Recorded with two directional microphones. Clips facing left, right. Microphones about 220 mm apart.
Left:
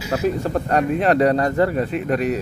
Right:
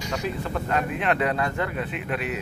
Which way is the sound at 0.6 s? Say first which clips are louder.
Left 7 dB; 40° left (ahead or behind).